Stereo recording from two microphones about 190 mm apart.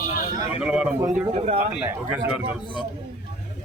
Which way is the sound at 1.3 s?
35° right (ahead or behind).